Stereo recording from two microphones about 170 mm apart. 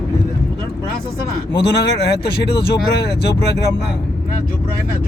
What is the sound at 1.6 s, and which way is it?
Speech, 75° left (ahead or behind).